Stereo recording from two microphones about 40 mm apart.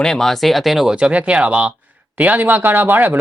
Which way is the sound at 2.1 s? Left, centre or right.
Right.